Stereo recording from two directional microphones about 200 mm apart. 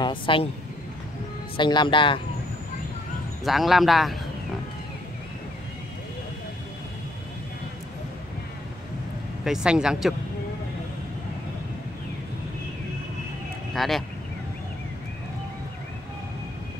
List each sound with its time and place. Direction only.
0.0 s speech: 25° left (ahead or behind)
1.6 s speech: 25° left (ahead or behind)
3.4 s speech: centre (ahead or behind)
9.4 s speech: 5° right (ahead or behind)
13.7 s speech: centre (ahead or behind)